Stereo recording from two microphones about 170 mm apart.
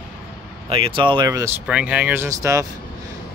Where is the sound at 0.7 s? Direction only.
30° right (ahead or behind).